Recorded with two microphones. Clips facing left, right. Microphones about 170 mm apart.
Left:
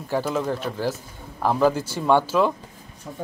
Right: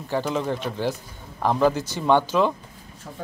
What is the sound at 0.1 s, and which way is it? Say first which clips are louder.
A man's voice: left 1 dB; 5° left (ahead or behind).